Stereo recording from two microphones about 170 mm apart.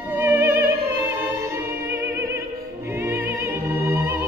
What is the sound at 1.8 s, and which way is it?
Music, 15° right (ahead or behind).